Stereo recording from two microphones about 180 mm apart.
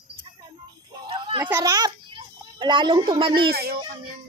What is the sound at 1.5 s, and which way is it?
A child's voice, 15° right (ahead or behind).